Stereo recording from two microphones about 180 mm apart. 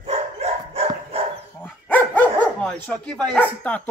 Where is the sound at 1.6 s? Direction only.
10° left (ahead or behind).